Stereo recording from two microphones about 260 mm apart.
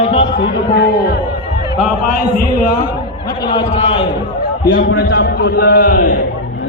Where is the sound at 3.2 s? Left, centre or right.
Centre.